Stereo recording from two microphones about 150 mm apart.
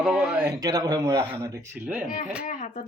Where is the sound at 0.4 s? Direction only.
25° right (ahead or behind).